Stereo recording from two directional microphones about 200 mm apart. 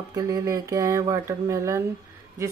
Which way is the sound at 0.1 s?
15° right (ahead or behind).